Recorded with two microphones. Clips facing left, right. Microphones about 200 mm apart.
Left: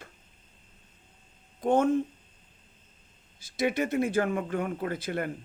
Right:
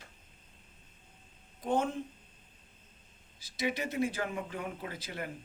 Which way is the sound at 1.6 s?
50° left (ahead or behind).